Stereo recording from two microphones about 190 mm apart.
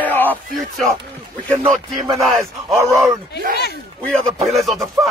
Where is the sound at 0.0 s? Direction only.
10° left (ahead or behind).